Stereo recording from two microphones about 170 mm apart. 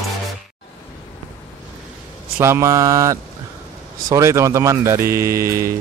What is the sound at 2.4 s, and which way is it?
Mantra, 15° right (ahead or behind).